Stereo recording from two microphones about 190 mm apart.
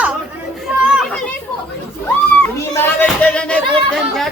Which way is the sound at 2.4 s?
10° left (ahead or behind).